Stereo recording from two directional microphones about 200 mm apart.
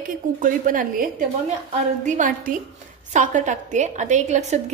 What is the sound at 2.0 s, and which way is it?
A woman's voice, 40° right (ahead or behind).